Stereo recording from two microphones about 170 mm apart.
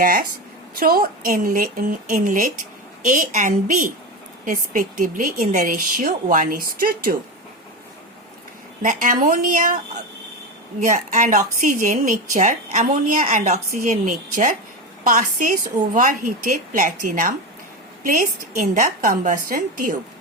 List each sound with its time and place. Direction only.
0.0 s a woman's voice: 55° right (ahead or behind)
8.8 s a woman's voice: 50° right (ahead or behind)
10.8 s a woman's voice: 45° right (ahead or behind)